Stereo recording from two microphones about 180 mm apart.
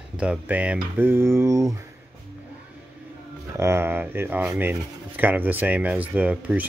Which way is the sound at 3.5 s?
15° right (ahead or behind).